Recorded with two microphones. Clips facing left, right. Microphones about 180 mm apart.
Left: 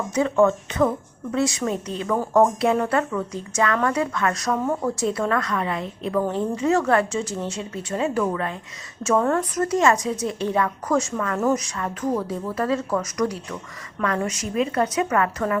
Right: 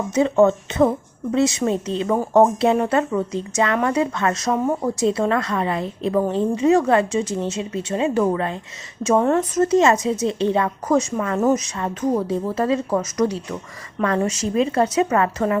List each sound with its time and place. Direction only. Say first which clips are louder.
0.1 s a woman's voice: right 3 dB; 25° right (ahead or behind)